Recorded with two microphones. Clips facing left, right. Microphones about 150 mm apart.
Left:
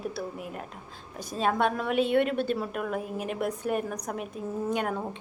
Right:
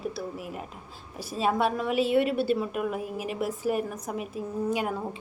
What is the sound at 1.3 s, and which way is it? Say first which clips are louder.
A woman's voice: even; 5° right (ahead or behind).